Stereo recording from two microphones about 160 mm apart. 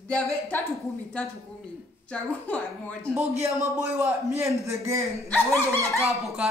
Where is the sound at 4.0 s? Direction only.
20° right (ahead or behind).